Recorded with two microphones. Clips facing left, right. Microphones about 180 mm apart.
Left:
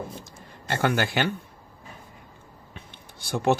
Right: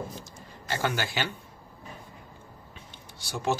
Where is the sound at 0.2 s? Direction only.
55° left (ahead or behind).